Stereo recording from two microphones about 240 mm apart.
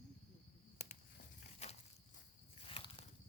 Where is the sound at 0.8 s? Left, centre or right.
Left.